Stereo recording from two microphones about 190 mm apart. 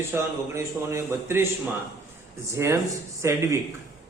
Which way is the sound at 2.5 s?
15° right (ahead or behind).